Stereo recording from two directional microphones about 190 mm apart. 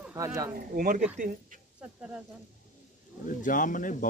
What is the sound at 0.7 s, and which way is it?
Speech, 45° right (ahead or behind).